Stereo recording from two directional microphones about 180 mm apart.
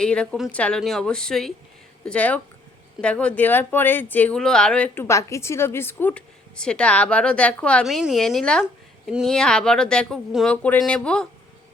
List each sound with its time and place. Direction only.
0.0 s speech: 5° left (ahead or behind)